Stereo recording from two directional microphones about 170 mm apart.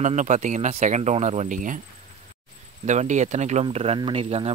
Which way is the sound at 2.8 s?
45° right (ahead or behind).